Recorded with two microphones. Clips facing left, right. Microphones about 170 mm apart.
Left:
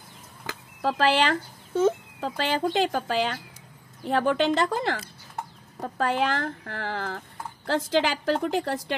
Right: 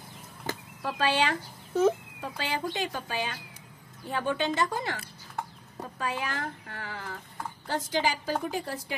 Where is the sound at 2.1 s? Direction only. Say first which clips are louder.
Left 6 dB; 85° left.